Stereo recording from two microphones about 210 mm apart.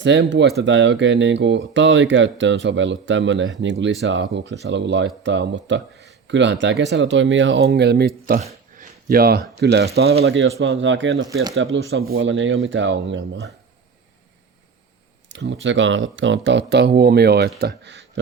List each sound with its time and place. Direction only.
0.0 s speech: 60° right (ahead or behind)
8.4 s a sound: 35° right (ahead or behind)
9.6 s speech: 55° right (ahead or behind)
10.2 s speech: 60° right (ahead or behind)
11.5 s speech: 70° right (ahead or behind)
15.3 s speech: 60° right (ahead or behind)